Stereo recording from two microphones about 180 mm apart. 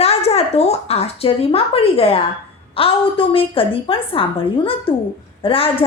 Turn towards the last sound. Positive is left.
turn(degrees=30)  # may be behind; listen again after turning